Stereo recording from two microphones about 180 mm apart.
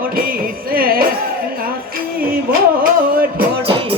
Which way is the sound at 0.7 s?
55° right (ahead or behind).